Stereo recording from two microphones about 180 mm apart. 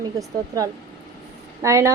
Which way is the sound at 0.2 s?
20° right (ahead or behind).